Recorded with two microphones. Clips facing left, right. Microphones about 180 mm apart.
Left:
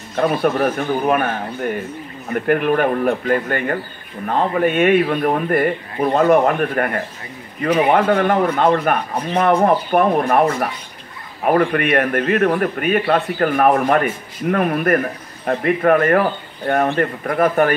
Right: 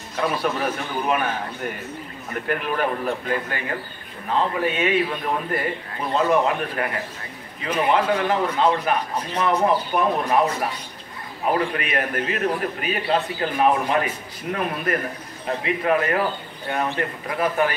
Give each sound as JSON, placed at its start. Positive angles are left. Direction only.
{"t": 0.1, "sound": "speech", "side_deg": 55}
{"t": 2.4, "sound": "a man's voice", "side_deg": 50}